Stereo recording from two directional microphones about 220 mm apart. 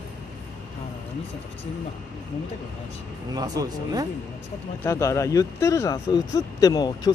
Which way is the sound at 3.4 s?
15° right (ahead or behind).